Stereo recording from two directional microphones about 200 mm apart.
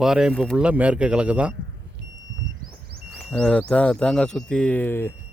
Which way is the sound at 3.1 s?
Centre (ahead or behind).